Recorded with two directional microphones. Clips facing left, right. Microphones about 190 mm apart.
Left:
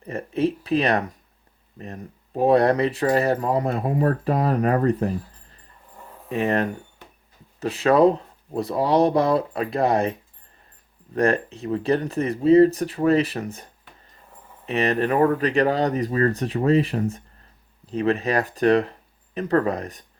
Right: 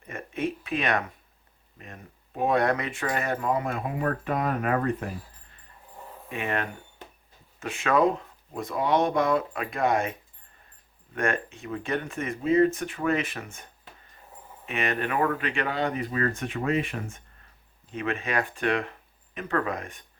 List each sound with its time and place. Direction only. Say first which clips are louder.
0.0 s a sound: left 7 dB; 35° left (ahead or behind)
1.8 s speech: left 9 dB; 35° left (ahead or behind)
14.7 s speech: left 7 dB; 35° left (ahead or behind)